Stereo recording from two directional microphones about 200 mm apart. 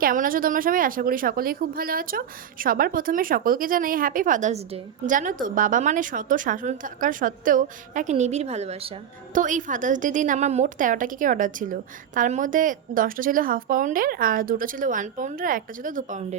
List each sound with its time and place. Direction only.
0.0 s a woman's voice: 45° right (ahead or behind)